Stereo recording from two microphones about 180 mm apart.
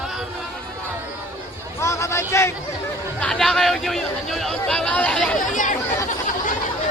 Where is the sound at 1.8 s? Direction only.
15° left (ahead or behind).